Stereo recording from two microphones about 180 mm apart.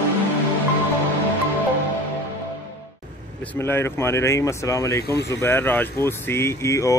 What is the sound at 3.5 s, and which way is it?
Speech, 10° left (ahead or behind).